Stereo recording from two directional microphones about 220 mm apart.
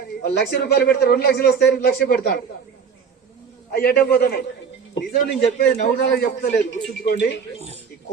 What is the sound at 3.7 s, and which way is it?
Speech, 45° left (ahead or behind).